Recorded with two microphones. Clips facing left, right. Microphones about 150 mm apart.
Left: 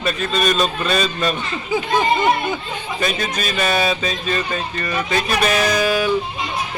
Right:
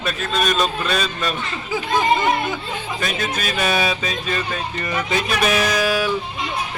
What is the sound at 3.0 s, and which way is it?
A man's voice, 5° right (ahead or behind).